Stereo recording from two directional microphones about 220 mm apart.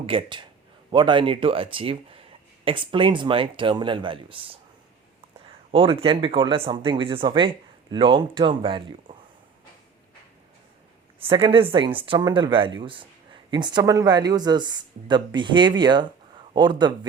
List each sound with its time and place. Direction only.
0.0 s speech: 25° right (ahead or behind)
5.7 s speech: 25° right (ahead or behind)
11.2 s speech: 25° right (ahead or behind)